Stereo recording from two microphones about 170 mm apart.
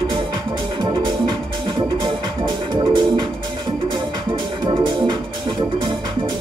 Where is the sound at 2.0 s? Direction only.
25° right (ahead or behind).